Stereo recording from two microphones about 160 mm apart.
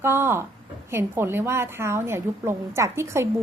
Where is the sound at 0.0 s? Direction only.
15° right (ahead or behind).